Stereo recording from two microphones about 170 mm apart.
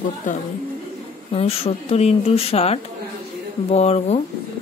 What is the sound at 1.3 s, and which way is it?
Speech, 35° left (ahead or behind).